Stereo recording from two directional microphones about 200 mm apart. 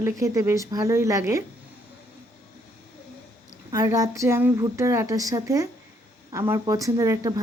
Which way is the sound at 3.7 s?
15° right (ahead or behind).